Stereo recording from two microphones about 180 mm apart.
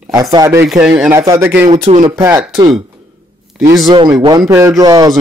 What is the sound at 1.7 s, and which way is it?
Speech, 40° right (ahead or behind).